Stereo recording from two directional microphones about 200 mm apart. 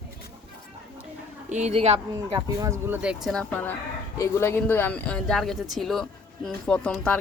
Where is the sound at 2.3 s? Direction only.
15° right (ahead or behind).